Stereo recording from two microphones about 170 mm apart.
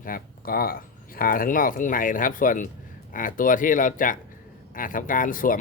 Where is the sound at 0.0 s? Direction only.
60° left (ahead or behind).